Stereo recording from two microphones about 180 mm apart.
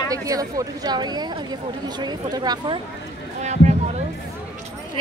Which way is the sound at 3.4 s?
40° right (ahead or behind).